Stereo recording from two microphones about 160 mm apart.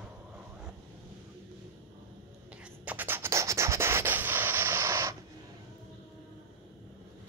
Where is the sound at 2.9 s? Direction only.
10° right (ahead or behind).